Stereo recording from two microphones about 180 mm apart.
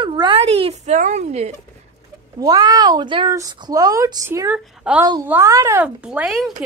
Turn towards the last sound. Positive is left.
turn(degrees=-5)  # may be behind; listen again after turning